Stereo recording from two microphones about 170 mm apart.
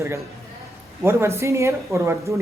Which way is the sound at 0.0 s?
15° right (ahead or behind).